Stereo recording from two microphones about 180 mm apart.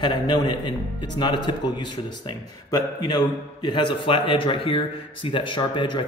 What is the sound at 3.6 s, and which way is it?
A man's voice, 25° left (ahead or behind).